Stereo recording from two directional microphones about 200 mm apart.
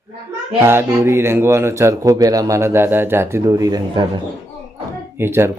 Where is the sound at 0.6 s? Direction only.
10° right (ahead or behind).